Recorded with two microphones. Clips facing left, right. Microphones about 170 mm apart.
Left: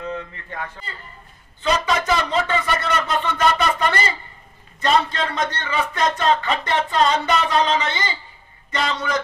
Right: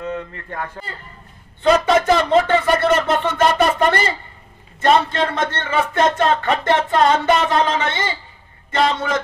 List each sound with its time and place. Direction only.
0.0 s a man's voice: 50° right (ahead or behind)